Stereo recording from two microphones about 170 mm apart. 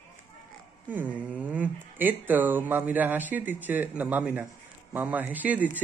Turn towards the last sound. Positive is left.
turn(degrees=-10)  # may be behind; listen again after turning